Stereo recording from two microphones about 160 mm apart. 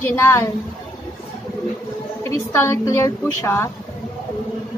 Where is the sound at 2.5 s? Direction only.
20° left (ahead or behind).